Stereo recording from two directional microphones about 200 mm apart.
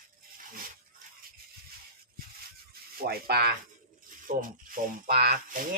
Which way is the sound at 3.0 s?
50° right (ahead or behind).